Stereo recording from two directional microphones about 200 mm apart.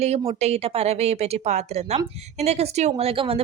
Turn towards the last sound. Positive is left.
turn(degrees=-25)  # may be behind; listen again after turning